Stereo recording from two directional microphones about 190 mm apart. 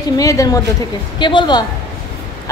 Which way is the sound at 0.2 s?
15° left (ahead or behind).